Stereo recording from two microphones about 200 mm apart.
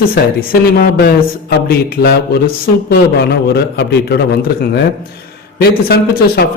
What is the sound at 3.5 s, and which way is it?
Speech, 55° left (ahead or behind).